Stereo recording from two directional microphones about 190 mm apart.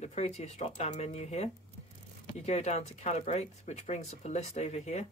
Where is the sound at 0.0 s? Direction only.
35° left (ahead or behind).